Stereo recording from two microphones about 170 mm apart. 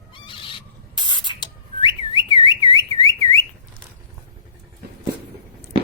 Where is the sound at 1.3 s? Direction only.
30° left (ahead or behind).